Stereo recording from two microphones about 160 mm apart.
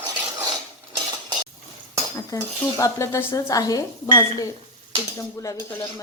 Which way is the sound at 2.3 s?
20° left (ahead or behind).